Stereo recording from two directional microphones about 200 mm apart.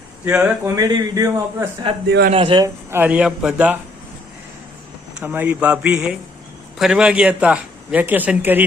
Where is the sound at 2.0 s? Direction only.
60° right (ahead or behind).